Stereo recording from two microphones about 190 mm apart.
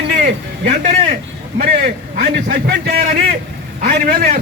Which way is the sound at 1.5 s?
50° right (ahead or behind).